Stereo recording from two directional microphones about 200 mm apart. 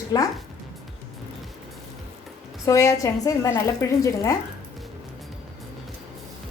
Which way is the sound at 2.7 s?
15° left (ahead or behind).